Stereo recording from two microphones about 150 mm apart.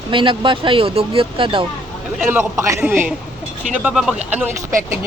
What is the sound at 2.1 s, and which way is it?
Speech, 15° right (ahead or behind).